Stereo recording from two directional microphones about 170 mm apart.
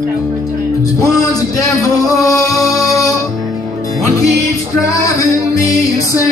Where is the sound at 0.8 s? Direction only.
20° left (ahead or behind).